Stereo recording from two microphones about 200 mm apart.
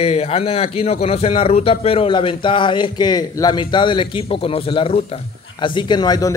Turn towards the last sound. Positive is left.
turn(degrees=20)  # may be behind; listen again after turning